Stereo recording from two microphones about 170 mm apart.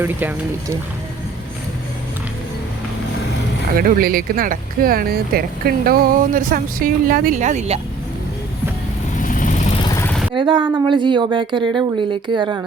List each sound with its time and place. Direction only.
0.0 s speech: 10° right (ahead or behind)
3.8 s speech: 60° right (ahead or behind); by 7.8 s 40° right (ahead or behind)
9.1 s vehicle: 50° left (ahead or behind)
10.3 s a woman's voice: 30° right (ahead or behind)